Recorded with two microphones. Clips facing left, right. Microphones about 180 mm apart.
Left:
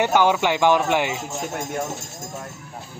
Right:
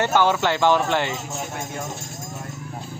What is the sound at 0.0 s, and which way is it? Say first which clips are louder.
Speech: left 1 dB; 15° left (ahead or behind).